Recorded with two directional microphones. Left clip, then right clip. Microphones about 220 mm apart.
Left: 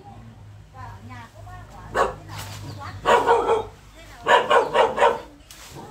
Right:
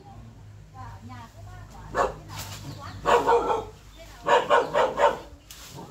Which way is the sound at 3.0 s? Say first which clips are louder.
Left 3 dB; 35° left (ahead or behind).